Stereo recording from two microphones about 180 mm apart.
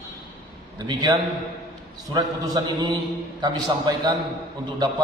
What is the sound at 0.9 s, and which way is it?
A man's voice, 25° right (ahead or behind).